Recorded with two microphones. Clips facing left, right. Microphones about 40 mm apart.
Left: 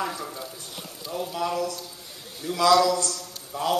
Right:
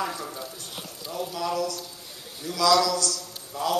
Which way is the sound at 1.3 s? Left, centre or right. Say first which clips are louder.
Left 1 dB; centre.